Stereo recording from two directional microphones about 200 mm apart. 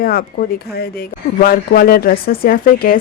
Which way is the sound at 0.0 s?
45° left (ahead or behind).